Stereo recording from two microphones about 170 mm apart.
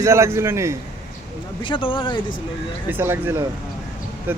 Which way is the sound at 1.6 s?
30° left (ahead or behind).